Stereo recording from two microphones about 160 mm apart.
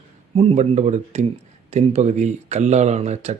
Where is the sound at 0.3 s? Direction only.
40° right (ahead or behind).